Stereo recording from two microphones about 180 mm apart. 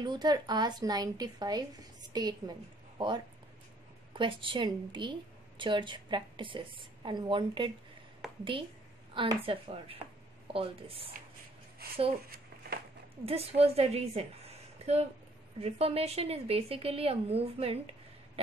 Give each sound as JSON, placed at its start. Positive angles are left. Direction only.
{"t": 0.0, "sound": "a woman's voice", "side_deg": -25}
{"t": 4.1, "sound": "a woman's voice", "side_deg": -30}
{"t": 8.2, "sound": "a sound", "side_deg": 0}
{"t": 9.1, "sound": "a woman's voice", "side_deg": -30}
{"t": 11.8, "sound": "speech", "side_deg": -60}
{"t": 12.3, "sound": "a sound", "side_deg": -60}
{"t": 13.2, "sound": "a woman's voice", "side_deg": -35}